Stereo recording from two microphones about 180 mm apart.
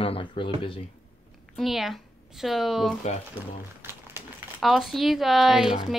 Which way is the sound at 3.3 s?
10° right (ahead or behind).